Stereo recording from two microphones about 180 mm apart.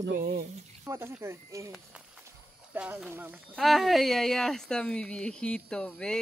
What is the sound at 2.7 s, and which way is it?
Speech, 5° right (ahead or behind).